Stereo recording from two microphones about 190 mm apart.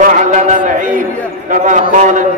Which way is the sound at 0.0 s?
45° right (ahead or behind).